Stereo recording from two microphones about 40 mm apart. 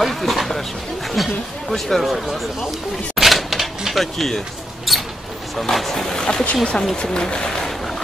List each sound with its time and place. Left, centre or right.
0.0 s a sound: centre
1.1 s speech: centre
3.2 s typewriter: centre
4.9 s mouse: centre
5.6 s speech: centre